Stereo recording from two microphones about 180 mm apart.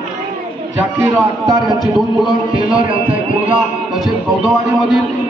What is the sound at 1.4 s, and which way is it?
Music, 20° right (ahead or behind).